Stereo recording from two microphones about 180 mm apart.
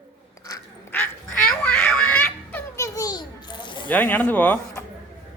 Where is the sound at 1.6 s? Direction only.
5° left (ahead or behind); by 3.9 s 25° left (ahead or behind).